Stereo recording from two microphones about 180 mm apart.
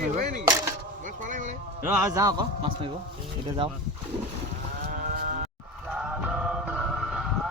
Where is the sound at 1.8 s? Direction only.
10° right (ahead or behind).